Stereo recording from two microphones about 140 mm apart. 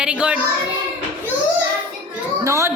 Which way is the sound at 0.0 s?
5° right (ahead or behind).